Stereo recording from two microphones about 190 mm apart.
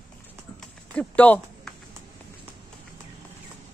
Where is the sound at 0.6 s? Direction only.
5° left (ahead or behind).